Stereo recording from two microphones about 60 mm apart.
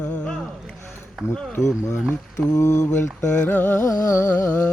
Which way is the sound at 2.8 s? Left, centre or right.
Left.